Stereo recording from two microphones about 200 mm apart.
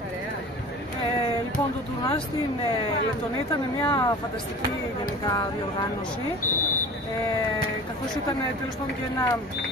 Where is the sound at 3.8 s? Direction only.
15° left (ahead or behind).